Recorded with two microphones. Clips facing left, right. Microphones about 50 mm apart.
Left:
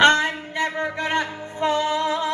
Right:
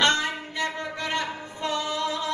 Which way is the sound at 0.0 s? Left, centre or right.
Left.